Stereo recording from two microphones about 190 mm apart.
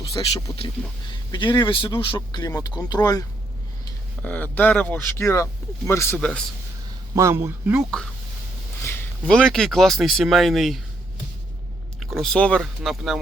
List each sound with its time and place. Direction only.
0.1 s speech: 20° left (ahead or behind)
4.2 s speech: 10° left (ahead or behind)
7.2 s speech: 15° right (ahead or behind)
8.8 s speech: 10° left (ahead or behind)
11.9 s speech: centre (ahead or behind)